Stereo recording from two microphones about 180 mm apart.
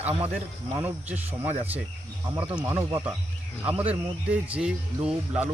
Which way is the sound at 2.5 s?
20° right (ahead or behind).